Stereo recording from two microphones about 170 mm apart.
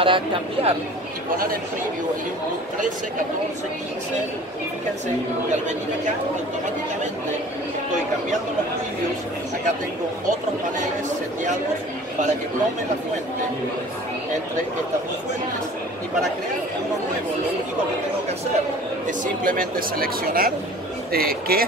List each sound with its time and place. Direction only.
0.0 s speech: 30° right (ahead or behind)
19.0 s speech: 55° right (ahead or behind)